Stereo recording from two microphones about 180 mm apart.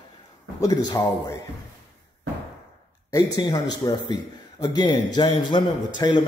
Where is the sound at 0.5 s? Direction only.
20° left (ahead or behind).